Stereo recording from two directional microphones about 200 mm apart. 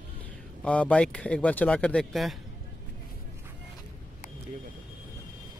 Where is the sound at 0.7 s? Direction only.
5° left (ahead or behind).